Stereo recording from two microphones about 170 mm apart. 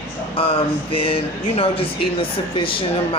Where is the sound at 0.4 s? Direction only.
35° left (ahead or behind).